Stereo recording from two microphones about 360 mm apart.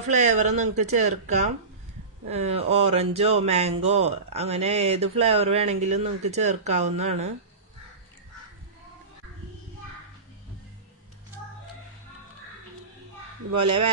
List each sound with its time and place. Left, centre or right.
0.1 s speech: centre
13.5 s speech: right